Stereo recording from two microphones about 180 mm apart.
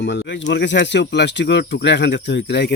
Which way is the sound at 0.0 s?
80° left.